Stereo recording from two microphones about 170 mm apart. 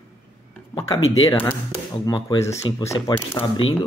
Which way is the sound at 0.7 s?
20° left (ahead or behind).